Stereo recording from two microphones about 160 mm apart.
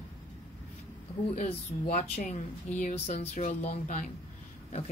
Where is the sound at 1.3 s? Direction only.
45° left (ahead or behind).